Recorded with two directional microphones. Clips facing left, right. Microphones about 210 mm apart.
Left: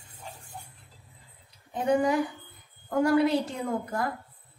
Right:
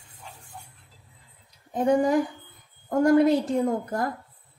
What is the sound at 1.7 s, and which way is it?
A woman's voice, 45° right (ahead or behind).